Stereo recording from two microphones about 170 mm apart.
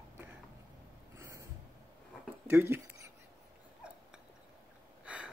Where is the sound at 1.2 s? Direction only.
20° right (ahead or behind).